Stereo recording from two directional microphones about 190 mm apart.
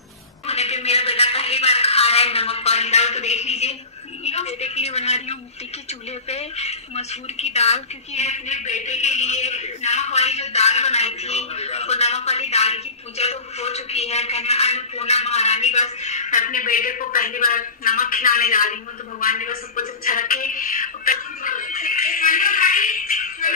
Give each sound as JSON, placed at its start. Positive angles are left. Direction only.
{"t": 0.5, "sound": "speech", "side_deg": 35}